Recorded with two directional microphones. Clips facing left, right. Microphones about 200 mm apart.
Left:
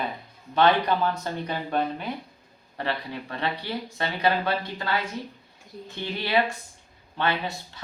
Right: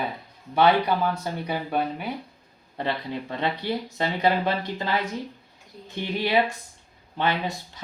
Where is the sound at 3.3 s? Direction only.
20° right (ahead or behind).